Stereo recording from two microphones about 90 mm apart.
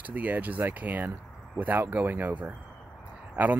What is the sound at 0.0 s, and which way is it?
Speech, 15° right (ahead or behind).